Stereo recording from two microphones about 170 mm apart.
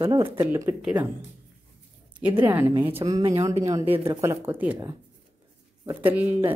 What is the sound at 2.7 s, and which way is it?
A woman's voice, 30° right (ahead or behind).